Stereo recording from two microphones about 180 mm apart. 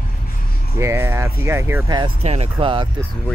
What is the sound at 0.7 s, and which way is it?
Speech, 15° right (ahead or behind).